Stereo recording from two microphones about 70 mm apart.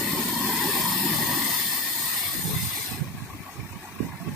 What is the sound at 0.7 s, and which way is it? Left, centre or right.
Vehicle, centre.